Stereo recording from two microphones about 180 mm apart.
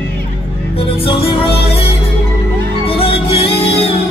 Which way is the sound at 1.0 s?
30° left (ahead or behind).